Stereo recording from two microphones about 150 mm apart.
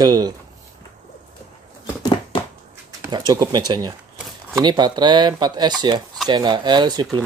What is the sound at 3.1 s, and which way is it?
Speech, 25° right (ahead or behind).